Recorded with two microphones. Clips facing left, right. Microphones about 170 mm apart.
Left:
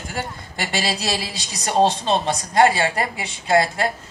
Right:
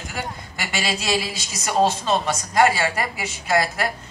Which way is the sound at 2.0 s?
25° left (ahead or behind).